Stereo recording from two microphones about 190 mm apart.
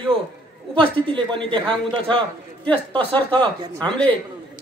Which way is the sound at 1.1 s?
25° right (ahead or behind).